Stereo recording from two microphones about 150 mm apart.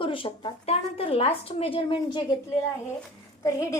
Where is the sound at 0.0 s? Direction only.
35° left (ahead or behind).